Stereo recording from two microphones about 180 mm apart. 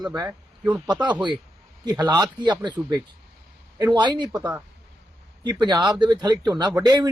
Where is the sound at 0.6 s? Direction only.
5° right (ahead or behind).